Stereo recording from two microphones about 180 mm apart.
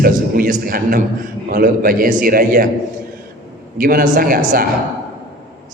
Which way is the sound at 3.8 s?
55° right (ahead or behind).